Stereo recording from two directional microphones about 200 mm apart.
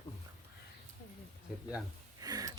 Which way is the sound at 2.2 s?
20° right (ahead or behind).